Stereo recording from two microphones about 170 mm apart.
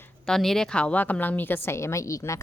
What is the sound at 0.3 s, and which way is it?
A woman's voice, centre (ahead or behind).